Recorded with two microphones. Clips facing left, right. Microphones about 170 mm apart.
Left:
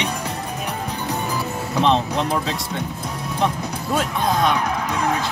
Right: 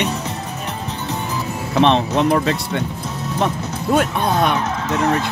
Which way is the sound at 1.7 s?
70° right (ahead or behind).